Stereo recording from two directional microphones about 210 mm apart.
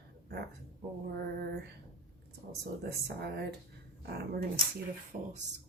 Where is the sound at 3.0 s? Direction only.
50° right (ahead or behind).